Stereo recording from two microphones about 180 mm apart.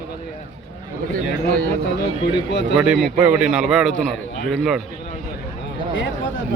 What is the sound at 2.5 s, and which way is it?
Speech, 75° left (ahead or behind).